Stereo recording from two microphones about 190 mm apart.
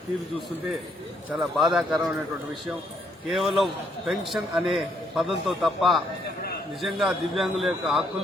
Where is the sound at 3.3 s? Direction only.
Centre (ahead or behind).